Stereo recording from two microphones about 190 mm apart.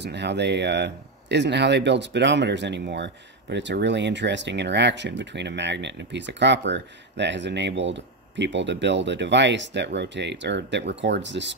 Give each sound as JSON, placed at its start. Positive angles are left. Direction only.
{"t": 0.0, "sound": "speech", "side_deg": -65}